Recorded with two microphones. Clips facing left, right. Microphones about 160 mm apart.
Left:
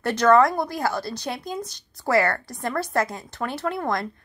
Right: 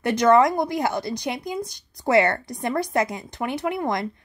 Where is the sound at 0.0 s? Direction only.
15° right (ahead or behind).